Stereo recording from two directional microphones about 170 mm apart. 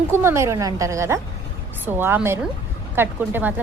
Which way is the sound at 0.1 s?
15° right (ahead or behind).